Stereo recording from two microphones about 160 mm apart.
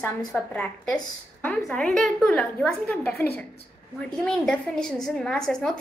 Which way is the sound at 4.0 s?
5° left (ahead or behind).